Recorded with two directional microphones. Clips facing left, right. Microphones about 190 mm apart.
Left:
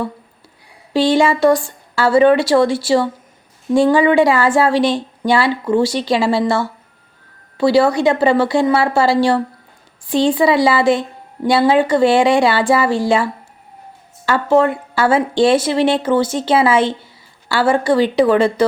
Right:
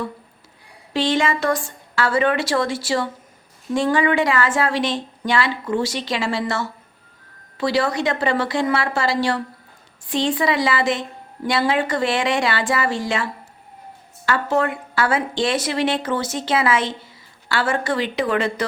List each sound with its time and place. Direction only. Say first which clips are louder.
0.9 s a woman's voice: left 6 dB; 30° left (ahead or behind)